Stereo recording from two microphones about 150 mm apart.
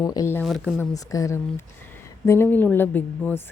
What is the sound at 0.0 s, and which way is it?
Speech, 25° left (ahead or behind).